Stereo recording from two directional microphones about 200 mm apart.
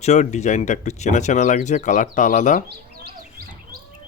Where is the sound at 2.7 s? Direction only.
50° right (ahead or behind).